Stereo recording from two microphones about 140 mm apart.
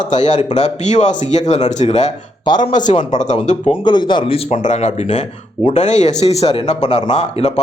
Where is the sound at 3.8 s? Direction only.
30° left (ahead or behind).